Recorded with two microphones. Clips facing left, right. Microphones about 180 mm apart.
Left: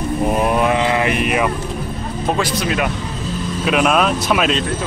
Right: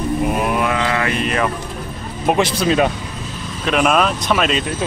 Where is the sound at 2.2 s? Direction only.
20° right (ahead or behind).